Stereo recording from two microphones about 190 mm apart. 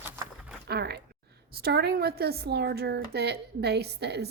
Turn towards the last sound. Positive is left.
turn(degrees=-60)  # may be behind; listen again after turning